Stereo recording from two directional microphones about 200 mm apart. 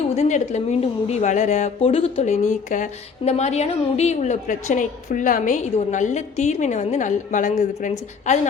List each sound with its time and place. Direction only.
0.1 s a woman's voice: 35° left (ahead or behind)